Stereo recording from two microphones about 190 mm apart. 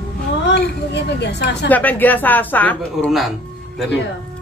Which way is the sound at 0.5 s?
65° left (ahead or behind).